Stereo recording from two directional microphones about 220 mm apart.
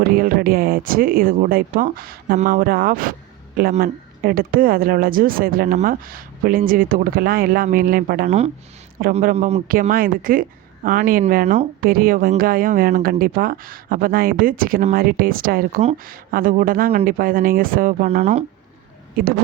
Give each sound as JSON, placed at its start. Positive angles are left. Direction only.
{"t": 0.0, "sound": "speech", "side_deg": -40}